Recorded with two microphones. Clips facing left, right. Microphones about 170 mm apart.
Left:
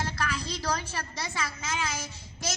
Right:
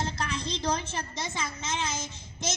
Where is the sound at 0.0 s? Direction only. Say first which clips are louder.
Even; 25° right (ahead or behind).